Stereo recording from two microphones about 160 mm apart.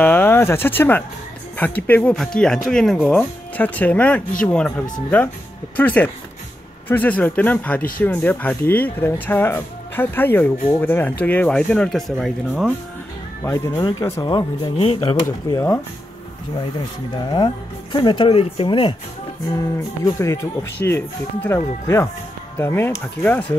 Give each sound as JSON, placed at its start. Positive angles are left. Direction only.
{"t": 0.0, "sound": "speech", "side_deg": 10}
{"t": 5.8, "sound": "speech", "side_deg": 10}
{"t": 13.4, "sound": "speech", "side_deg": 15}
{"t": 15.5, "sound": "speech", "side_deg": 20}
{"t": 17.1, "sound": "speech", "side_deg": 30}
{"t": 20.1, "sound": "speech", "side_deg": 20}